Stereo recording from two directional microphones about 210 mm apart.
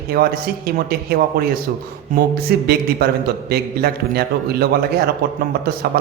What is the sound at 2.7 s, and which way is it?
A man's voice, 50° right (ahead or behind).